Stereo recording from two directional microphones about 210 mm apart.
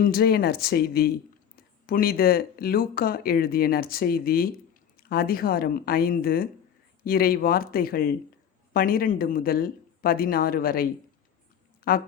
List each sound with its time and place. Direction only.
0.0 s speech: 45° left (ahead or behind)